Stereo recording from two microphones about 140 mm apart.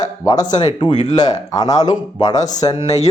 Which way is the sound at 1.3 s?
30° left (ahead or behind).